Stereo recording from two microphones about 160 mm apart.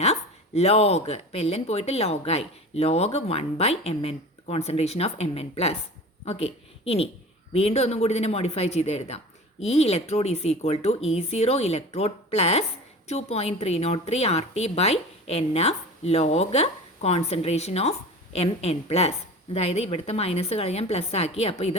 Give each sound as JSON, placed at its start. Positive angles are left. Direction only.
{"t": 0.0, "sound": "speech", "side_deg": 40}